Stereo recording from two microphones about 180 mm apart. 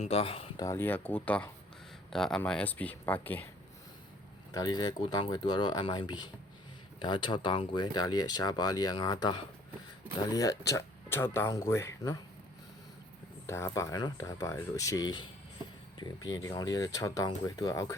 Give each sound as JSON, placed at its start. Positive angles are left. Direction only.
{"t": 0.0, "sound": "speech", "side_deg": 30}
{"t": 0.6, "sound": "speech", "side_deg": 15}
{"t": 4.5, "sound": "speech", "side_deg": 20}
{"t": 13.5, "sound": "speech", "side_deg": 15}